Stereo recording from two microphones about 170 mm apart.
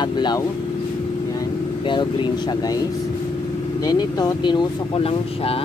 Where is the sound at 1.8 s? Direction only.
25° left (ahead or behind).